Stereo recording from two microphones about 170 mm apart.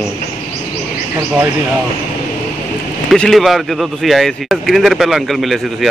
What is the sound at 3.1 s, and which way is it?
Speech, centre (ahead or behind).